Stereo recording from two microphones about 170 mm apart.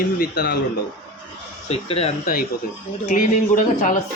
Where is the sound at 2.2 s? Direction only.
55° left (ahead or behind).